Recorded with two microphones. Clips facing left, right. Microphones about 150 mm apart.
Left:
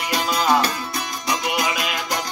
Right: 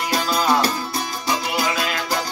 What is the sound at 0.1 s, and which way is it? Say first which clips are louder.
Music: left 1 dB; 35° right (ahead or behind).